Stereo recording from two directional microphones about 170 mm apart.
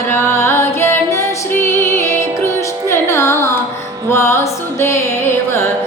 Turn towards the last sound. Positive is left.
turn(degrees=15)  # may be behind; listen again after turning